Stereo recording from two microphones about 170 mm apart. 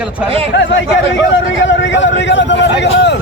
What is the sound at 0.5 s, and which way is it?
A man's voice, 90° left.